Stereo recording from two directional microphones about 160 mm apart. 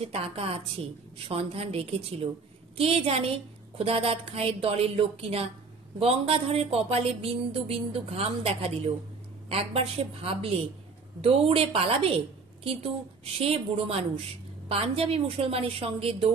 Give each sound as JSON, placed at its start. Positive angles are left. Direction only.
{"t": 0.0, "sound": "a woman's voice", "side_deg": -35}